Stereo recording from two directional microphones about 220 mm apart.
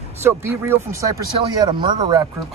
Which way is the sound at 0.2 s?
10° right (ahead or behind).